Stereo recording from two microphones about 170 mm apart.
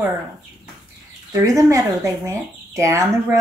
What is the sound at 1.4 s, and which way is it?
Speech, 20° right (ahead or behind).